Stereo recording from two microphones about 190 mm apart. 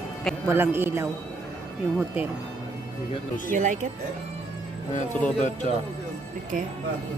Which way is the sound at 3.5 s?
40° right (ahead or behind).